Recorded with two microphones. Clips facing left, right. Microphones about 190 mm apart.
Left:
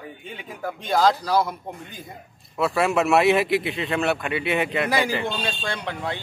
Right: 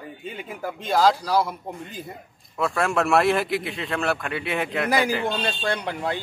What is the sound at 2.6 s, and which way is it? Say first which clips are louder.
Speech: left 2 dB; 5° left (ahead or behind).